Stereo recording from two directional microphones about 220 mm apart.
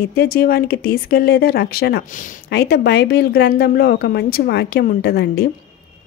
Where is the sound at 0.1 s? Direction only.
45° left (ahead or behind).